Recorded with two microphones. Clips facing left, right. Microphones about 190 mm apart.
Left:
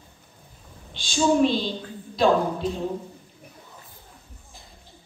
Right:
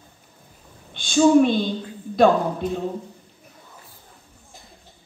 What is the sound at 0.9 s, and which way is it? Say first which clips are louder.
A woman's voice: right 6 dB; 55° right (ahead or behind).